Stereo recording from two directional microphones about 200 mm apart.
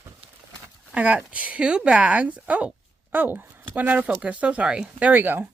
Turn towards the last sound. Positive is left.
turn(degrees=-10)  # may be behind; listen again after turning